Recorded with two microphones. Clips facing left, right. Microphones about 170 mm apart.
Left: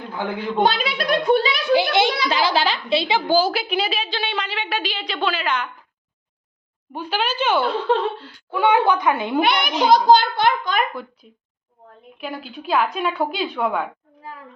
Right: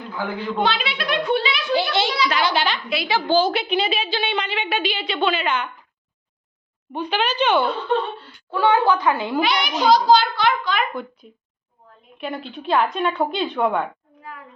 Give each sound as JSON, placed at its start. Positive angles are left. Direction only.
{"t": 0.6, "sound": "a child's voice", "side_deg": 40}
{"t": 1.7, "sound": "a child's voice", "side_deg": 15}
{"t": 2.0, "sound": "a child's voice", "side_deg": 50}
{"t": 2.3, "sound": "a woman's voice", "side_deg": 30}
{"t": 3.2, "sound": "a woman's voice", "side_deg": 10}
{"t": 6.9, "sound": "a woman's voice", "side_deg": 5}
{"t": 8.4, "sound": "a child's voice", "side_deg": 15}
{"t": 9.4, "sound": "a child's voice", "side_deg": 55}
{"t": 11.2, "sound": "a woman's voice", "side_deg": 0}
{"t": 14.2, "sound": "a sound", "side_deg": 30}